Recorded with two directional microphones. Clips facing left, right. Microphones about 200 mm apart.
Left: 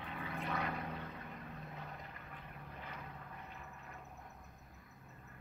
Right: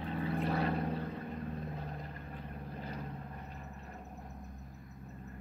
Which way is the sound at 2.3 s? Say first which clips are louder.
Right 8 dB; 35° right (ahead or behind).